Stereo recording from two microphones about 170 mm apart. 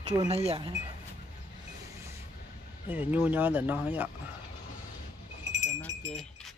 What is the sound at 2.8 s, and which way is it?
Speech, 10° right (ahead or behind).